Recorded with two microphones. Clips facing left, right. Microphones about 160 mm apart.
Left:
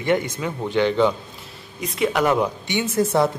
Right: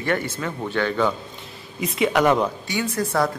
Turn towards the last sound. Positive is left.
turn(degrees=25)  # may be behind; listen again after turning